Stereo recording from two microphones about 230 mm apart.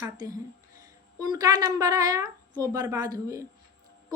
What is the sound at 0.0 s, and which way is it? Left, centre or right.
A woman's voice, centre.